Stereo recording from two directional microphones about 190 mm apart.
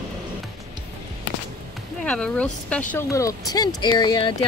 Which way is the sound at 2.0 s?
5° left (ahead or behind).